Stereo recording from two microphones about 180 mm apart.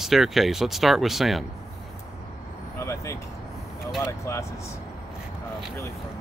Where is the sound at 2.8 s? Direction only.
15° left (ahead or behind).